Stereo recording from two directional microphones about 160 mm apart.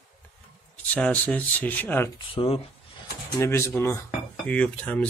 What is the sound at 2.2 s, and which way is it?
Speech, 35° left (ahead or behind).